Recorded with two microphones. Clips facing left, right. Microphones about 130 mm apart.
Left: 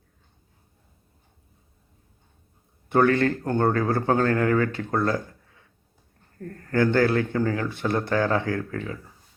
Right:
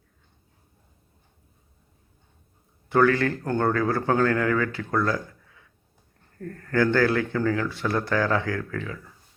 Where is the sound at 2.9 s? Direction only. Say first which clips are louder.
Left 1 dB; 25° left (ahead or behind).